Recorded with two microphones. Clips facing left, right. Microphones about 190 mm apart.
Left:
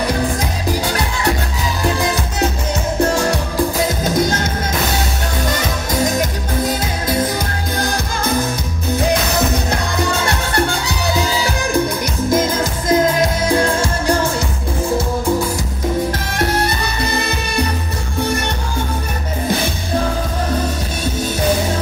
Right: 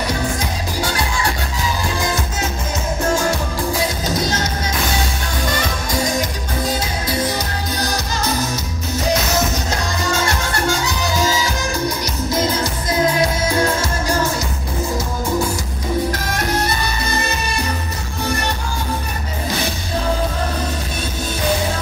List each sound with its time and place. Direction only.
4.0 s music: 55° left (ahead or behind)
7.3 s music: 55° left (ahead or behind)
9.7 s music: 60° left (ahead or behind)
12.3 s music: 50° left (ahead or behind)